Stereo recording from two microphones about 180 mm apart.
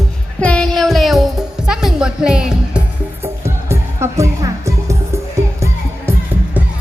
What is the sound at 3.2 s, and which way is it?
Music, 15° right (ahead or behind).